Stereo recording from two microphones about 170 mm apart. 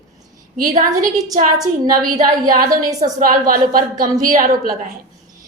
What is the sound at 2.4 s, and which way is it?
A woman's voice, 55° right (ahead or behind).